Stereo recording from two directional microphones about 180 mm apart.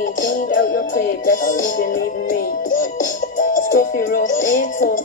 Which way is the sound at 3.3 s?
45° left (ahead or behind).